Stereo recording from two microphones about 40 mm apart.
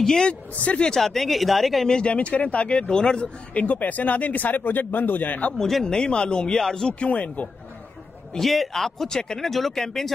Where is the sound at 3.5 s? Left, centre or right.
Left.